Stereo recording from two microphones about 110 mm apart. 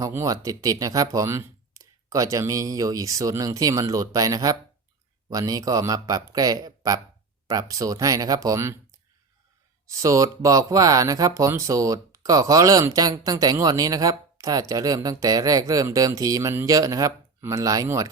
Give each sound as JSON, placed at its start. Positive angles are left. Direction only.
{"t": 0.1, "sound": "speech", "side_deg": -30}
{"t": 9.8, "sound": "speech", "side_deg": -30}